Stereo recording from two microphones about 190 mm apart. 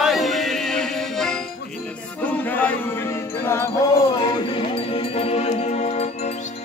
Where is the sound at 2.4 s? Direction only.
10° left (ahead or behind).